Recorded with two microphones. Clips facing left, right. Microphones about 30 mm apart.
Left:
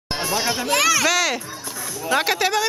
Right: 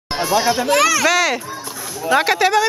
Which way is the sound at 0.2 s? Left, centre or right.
Right.